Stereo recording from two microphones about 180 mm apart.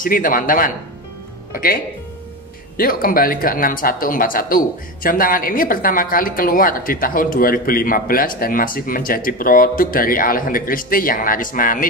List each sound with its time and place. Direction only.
0.0 s speech: 50° left (ahead or behind)
2.8 s speech: 50° left (ahead or behind)